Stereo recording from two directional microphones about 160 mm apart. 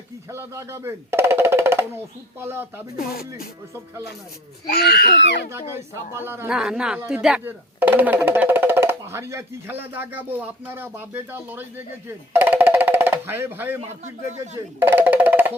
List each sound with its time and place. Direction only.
0.3 s speech: 15° right (ahead or behind)
2.9 s speech: 70° left (ahead or behind)
4.6 s speech: 90° left
5.5 s speech: 15° right (ahead or behind)
12.0 s music: 15° right (ahead or behind)
14.8 s music: 10° right (ahead or behind)